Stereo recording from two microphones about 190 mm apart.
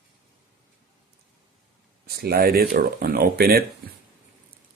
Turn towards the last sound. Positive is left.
turn(degrees=-55)  # may be behind; listen again after turning